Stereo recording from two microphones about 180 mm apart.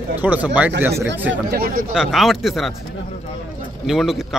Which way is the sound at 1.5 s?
55° right (ahead or behind).